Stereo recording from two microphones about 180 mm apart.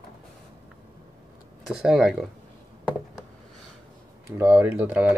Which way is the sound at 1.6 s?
5° right (ahead or behind).